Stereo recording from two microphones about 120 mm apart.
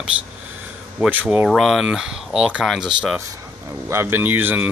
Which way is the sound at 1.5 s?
Centre (ahead or behind).